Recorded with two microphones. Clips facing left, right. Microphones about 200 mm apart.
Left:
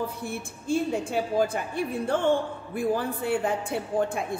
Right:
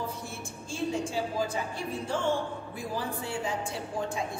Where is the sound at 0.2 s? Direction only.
60° left (ahead or behind).